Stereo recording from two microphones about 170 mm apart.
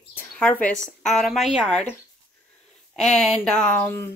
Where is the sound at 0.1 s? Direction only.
10° left (ahead or behind).